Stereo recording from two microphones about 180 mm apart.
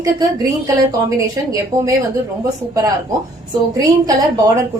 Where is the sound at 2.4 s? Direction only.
20° right (ahead or behind).